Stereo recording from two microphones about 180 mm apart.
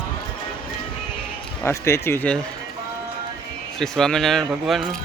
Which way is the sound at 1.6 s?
15° left (ahead or behind).